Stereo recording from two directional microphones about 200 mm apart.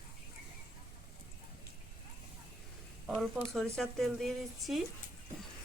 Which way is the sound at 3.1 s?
Centre (ahead or behind).